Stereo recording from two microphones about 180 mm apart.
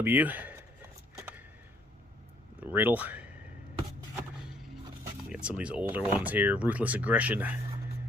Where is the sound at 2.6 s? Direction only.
10° right (ahead or behind).